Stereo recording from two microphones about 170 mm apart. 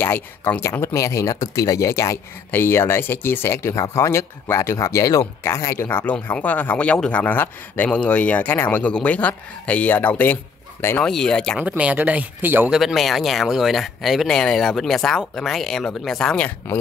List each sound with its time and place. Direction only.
0.0 s speech: 15° left (ahead or behind)
11.6 s speech: 10° right (ahead or behind); by 16.7 s 10° left (ahead or behind)